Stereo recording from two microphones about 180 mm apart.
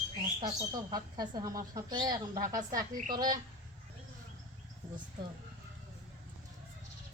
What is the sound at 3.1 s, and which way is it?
Speech, 20° right (ahead or behind).